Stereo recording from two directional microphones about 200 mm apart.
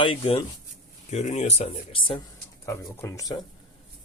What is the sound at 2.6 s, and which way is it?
Speech, 15° left (ahead or behind).